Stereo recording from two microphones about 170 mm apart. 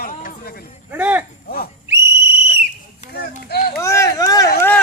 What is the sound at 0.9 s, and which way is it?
Speech, 10° right (ahead or behind).